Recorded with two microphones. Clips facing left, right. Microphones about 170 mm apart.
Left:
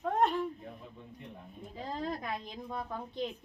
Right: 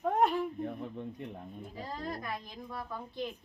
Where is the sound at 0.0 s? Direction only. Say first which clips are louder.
Right 1 dB; 10° right (ahead or behind).